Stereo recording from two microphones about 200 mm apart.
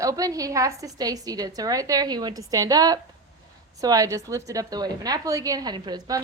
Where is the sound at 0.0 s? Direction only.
15° right (ahead or behind).